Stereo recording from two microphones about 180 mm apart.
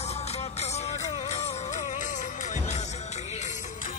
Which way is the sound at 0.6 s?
35° left (ahead or behind).